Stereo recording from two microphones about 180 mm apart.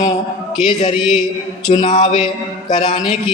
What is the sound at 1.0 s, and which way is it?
Speech, centre (ahead or behind).